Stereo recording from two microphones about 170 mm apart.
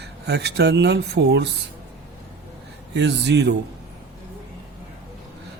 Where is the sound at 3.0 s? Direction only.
90° right.